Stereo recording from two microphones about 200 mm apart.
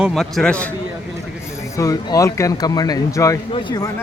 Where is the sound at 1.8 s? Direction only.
15° left (ahead or behind).